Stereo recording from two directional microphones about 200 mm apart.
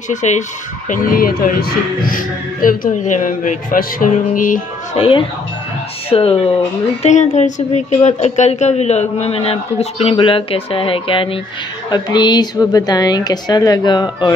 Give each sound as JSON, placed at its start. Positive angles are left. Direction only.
{"t": 0.1, "sound": "speech", "side_deg": 35}
{"t": 4.9, "sound": "speech", "side_deg": 25}